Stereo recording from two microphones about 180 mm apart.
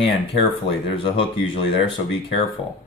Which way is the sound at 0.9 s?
30° left (ahead or behind).